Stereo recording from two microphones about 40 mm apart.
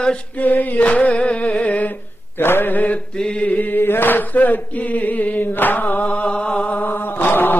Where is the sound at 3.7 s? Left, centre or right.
Left.